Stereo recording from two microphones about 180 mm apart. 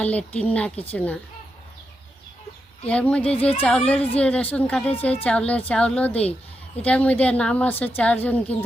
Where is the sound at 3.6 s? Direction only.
5° left (ahead or behind).